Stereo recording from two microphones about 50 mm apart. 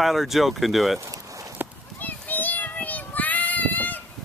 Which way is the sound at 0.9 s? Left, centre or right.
Right.